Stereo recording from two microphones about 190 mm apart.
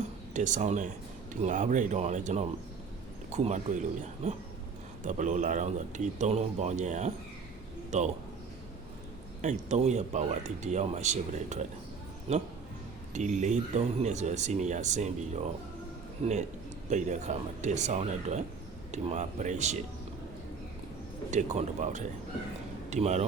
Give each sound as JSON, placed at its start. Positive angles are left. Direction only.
{"t": 0.3, "sound": "speech", "side_deg": -40}
{"t": 9.4, "sound": "speech", "side_deg": -40}
{"t": 16.9, "sound": "speech", "side_deg": -40}
{"t": 21.2, "sound": "speech", "side_deg": -40}